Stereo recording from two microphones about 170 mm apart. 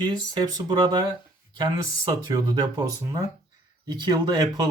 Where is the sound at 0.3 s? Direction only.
20° right (ahead or behind).